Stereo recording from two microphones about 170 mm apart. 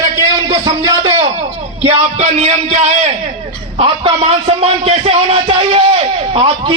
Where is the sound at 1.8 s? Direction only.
40° right (ahead or behind).